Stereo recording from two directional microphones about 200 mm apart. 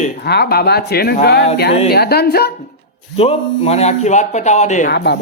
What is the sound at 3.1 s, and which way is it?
Speech, 30° left (ahead or behind).